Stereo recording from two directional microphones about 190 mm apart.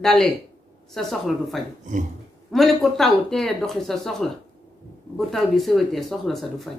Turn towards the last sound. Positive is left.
turn(degrees=0)  # may be behind; listen again after turning